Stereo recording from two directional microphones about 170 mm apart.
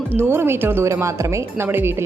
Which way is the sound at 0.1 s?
15° right (ahead or behind).